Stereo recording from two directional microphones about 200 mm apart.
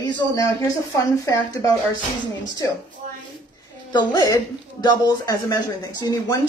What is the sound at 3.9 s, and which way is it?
A woman's voice, 15° left (ahead or behind).